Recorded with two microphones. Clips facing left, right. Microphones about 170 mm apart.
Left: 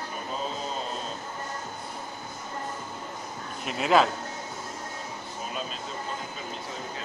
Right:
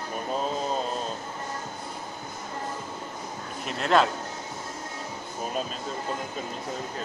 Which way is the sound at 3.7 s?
5° left (ahead or behind).